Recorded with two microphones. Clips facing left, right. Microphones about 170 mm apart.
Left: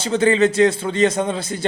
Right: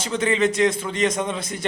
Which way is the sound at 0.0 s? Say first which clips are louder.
Left 5 dB; 30° left (ahead or behind).